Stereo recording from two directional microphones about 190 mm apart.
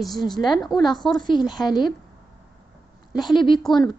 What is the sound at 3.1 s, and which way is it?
Speech, 25° left (ahead or behind).